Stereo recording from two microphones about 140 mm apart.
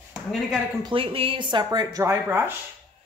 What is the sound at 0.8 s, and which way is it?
Speech, 40° right (ahead or behind).